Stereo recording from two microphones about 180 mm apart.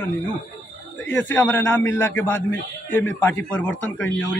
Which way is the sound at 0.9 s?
90° left.